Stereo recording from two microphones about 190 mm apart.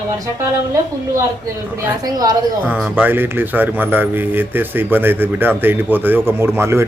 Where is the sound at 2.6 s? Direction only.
10° right (ahead or behind).